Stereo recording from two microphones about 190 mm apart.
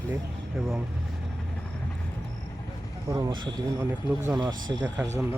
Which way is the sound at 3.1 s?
20° right (ahead or behind).